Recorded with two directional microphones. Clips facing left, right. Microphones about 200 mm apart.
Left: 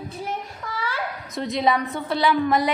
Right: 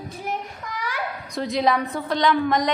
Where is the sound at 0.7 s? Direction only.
15° right (ahead or behind).